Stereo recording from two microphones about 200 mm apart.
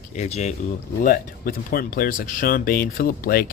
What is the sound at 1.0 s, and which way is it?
Speech, 50° left (ahead or behind).